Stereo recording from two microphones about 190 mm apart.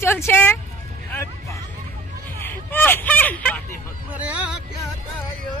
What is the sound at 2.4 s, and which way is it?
Hubbub, 10° left (ahead or behind).